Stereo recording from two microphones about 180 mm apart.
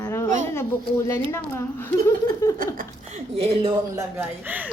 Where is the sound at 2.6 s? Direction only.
50° right (ahead or behind).